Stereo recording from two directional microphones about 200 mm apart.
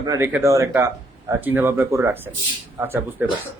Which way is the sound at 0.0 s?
15° right (ahead or behind).